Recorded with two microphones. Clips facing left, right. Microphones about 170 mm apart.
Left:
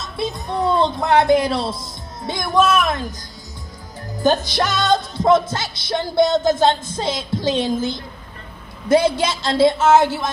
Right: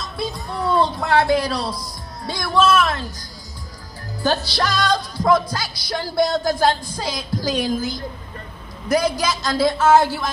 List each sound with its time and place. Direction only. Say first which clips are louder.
0.0 s speech: left 2 dB; 20° left (ahead or behind)
4.2 s music: left 3 dB; 20° left (ahead or behind)